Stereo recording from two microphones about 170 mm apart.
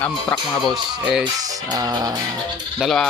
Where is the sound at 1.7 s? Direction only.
25° right (ahead or behind).